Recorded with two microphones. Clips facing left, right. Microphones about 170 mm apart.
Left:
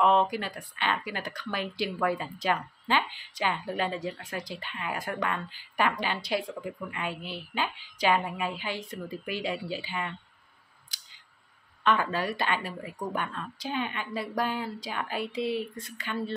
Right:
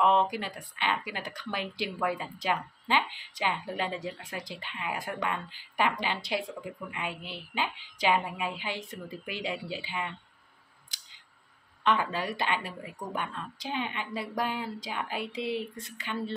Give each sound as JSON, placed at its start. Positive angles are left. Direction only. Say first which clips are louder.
{"t": 0.3, "sound": "a woman's voice", "louder": "left 2 dB", "side_deg": -20}
{"t": 10.9, "sound": "scissors", "louder": "left 1 dB", "side_deg": -20}
{"t": 11.8, "sound": "a woman's voice", "louder": "left 1 dB", "side_deg": -15}